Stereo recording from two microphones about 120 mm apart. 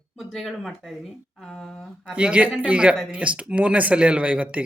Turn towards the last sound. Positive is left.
turn(degrees=-10)  # may be behind; listen again after turning